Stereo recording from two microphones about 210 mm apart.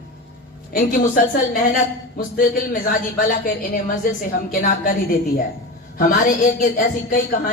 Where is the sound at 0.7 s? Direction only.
40° left (ahead or behind).